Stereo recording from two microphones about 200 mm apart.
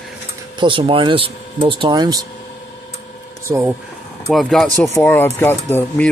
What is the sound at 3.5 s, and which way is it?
Speech, 10° right (ahead or behind).